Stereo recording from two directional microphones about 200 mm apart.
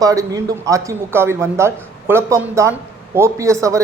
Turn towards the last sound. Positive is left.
turn(degrees=-15)  # may be behind; listen again after turning